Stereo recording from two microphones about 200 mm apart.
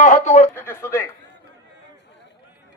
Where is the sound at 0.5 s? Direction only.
10° left (ahead or behind).